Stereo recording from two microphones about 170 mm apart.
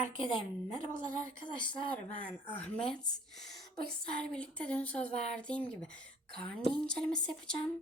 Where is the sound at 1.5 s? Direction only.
25° left (ahead or behind).